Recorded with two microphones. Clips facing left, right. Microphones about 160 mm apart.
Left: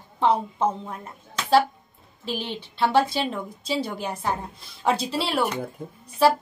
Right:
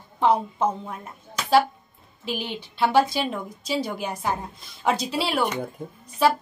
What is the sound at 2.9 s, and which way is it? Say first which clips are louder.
Speech: right 1 dB; 30° left (ahead or behind).